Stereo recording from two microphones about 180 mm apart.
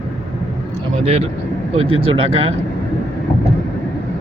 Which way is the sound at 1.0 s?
35° right (ahead or behind).